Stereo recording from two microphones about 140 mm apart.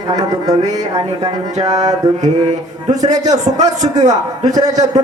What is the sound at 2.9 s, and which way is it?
Music, 25° right (ahead or behind).